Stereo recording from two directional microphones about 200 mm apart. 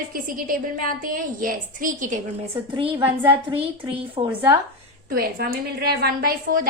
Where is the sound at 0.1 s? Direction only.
45° right (ahead or behind).